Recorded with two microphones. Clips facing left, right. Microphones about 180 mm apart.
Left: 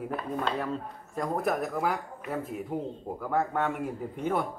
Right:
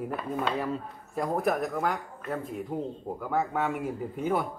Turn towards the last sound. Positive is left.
turn(degrees=0)  # may be behind; listen again after turning